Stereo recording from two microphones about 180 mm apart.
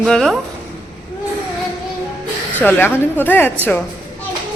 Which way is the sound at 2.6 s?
10° left (ahead or behind).